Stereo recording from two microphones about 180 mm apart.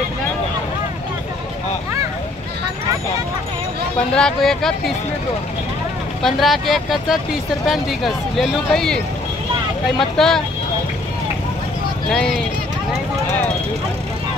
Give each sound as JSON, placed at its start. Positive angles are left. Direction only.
{"t": 4.1, "sound": "speech", "side_deg": 5}
{"t": 6.2, "sound": "speech", "side_deg": 0}
{"t": 12.1, "sound": "speech", "side_deg": 0}